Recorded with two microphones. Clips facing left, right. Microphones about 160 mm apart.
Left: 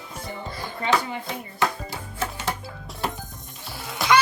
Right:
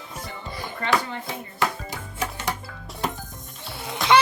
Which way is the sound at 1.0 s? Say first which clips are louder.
Left 1 dB; 15° left (ahead or behind).